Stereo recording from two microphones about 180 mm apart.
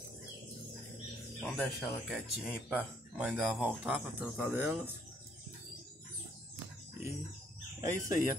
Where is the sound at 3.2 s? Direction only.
10° right (ahead or behind).